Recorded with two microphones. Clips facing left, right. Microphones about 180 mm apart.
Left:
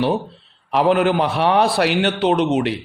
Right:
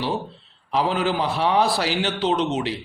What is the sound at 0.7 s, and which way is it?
A man's voice, 65° left (ahead or behind).